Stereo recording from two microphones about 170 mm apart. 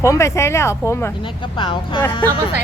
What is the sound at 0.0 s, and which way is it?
Speech, 15° left (ahead or behind).